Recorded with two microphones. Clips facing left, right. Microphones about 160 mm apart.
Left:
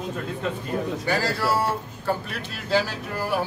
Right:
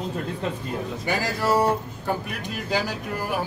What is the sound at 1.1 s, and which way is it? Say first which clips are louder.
A man's voice: right 2 dB; 20° right (ahead or behind).